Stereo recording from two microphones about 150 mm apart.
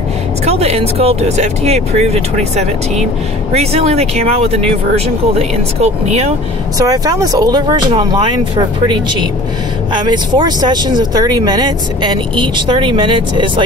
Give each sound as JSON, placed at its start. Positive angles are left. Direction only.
{"t": 0.5, "sound": "speech", "side_deg": -45}
{"t": 6.8, "sound": "speech", "side_deg": -25}
{"t": 10.0, "sound": "speech", "side_deg": -30}